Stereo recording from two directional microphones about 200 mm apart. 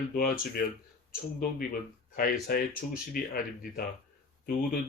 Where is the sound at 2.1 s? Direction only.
45° left (ahead or behind).